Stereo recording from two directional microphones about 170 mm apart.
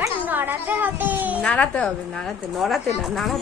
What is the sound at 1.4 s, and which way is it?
Speech, 10° left (ahead or behind).